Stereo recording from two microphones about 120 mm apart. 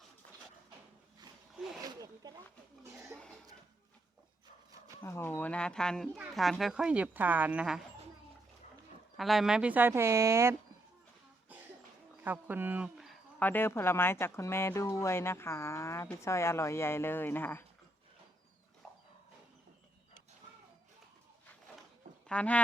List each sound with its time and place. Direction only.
1.8 s zipper: 30° right (ahead or behind)
5.0 s speech: 20° left (ahead or behind); by 7.9 s 5° right (ahead or behind)
9.1 s speech: centre (ahead or behind); by 10.5 s 20° right (ahead or behind)
12.2 s speech: 15° right (ahead or behind)
13.4 s speech: 15° left (ahead or behind)
22.3 s speech: 10° left (ahead or behind)